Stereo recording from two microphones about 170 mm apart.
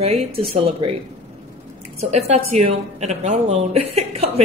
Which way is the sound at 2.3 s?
40° right (ahead or behind).